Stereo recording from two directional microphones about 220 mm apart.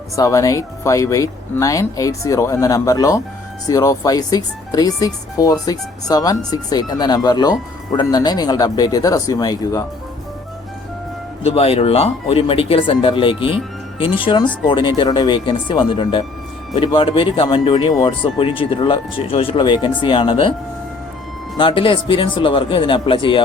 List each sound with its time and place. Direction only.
0.2 s speech: 15° left (ahead or behind)
11.4 s speech: 25° left (ahead or behind)
21.6 s speech: 25° left (ahead or behind)